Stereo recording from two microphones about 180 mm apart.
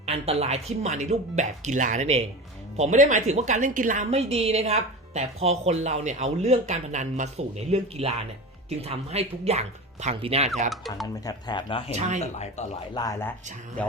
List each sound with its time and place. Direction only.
0.0 s a woman's voice: 35° right (ahead or behind)
10.7 s speech: centre (ahead or behind)
11.0 s speech: 20° left (ahead or behind)
11.9 s a woman's voice: 40° right (ahead or behind)
12.2 s speech: 40° left (ahead or behind)
12.9 s speech: 20° left (ahead or behind)